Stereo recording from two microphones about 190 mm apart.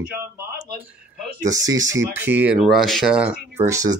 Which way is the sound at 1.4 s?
20° right (ahead or behind).